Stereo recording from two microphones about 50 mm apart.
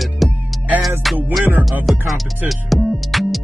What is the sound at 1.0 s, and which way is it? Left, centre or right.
Speech, centre.